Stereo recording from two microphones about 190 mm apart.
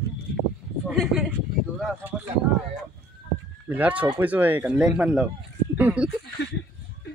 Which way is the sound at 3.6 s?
10° right (ahead or behind).